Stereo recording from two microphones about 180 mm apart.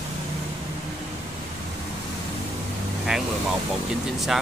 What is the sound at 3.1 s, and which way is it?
Speech, 5° right (ahead or behind).